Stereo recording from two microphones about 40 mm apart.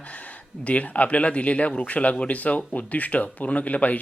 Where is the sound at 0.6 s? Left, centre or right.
Left.